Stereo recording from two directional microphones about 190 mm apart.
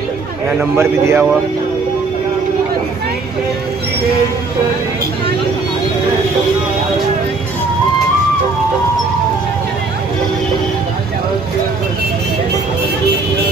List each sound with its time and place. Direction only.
0.5 s a man's voice: 10° right (ahead or behind)